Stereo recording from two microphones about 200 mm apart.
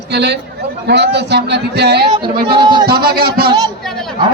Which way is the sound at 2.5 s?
25° right (ahead or behind).